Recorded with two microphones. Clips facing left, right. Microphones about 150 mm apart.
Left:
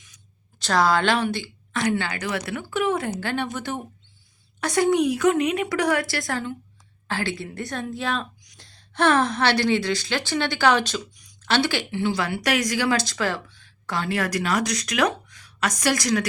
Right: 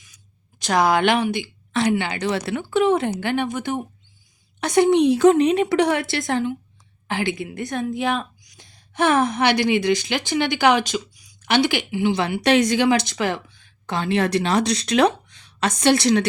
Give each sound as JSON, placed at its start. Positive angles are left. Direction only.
{"t": 0.6, "sound": "a woman's voice", "side_deg": -15}